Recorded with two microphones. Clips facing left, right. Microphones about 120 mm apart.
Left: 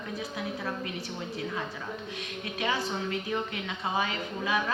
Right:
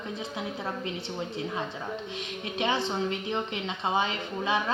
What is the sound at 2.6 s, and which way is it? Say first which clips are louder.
Speech: right 3 dB; 25° right (ahead or behind).